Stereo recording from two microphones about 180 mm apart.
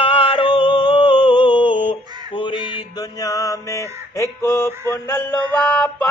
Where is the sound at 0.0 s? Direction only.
30° left (ahead or behind).